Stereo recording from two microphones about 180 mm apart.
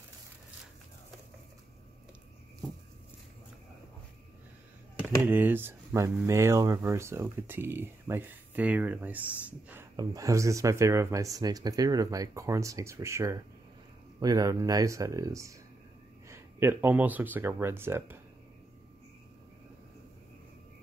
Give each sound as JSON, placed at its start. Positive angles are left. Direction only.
{"t": 5.2, "sound": "speech", "side_deg": -10}